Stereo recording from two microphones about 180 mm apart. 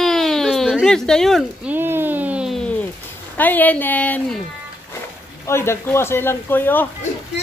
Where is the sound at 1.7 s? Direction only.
10° right (ahead or behind).